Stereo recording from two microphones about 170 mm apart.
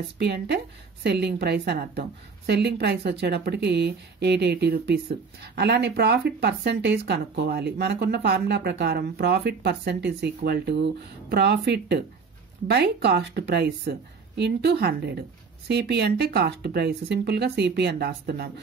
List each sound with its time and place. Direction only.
0.2 s a woman's voice: 80° right